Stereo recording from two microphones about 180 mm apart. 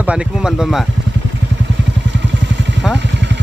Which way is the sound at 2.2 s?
75° right (ahead or behind).